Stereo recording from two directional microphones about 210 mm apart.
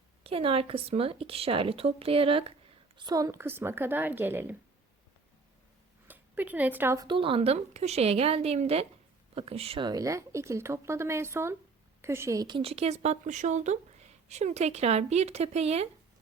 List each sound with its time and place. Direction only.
0.2 s speech: 25° right (ahead or behind); by 4.5 s 10° right (ahead or behind)
6.1 s speech: 10° right (ahead or behind); by 15.9 s 30° right (ahead or behind)